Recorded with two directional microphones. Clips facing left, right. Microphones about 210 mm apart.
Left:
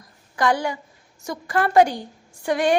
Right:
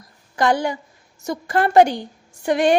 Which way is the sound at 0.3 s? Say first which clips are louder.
Right 2 dB; 25° right (ahead or behind).